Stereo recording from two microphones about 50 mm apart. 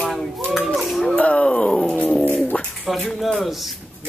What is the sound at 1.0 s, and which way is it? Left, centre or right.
Speech, left.